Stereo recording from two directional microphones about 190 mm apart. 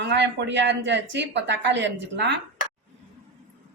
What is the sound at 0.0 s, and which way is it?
Speech, 65° right (ahead or behind).